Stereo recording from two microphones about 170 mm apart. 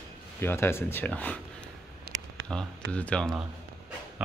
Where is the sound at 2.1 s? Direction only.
65° right (ahead or behind).